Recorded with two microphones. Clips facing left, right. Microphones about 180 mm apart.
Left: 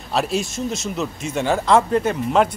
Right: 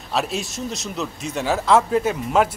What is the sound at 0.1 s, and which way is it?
A man's voice, centre (ahead or behind).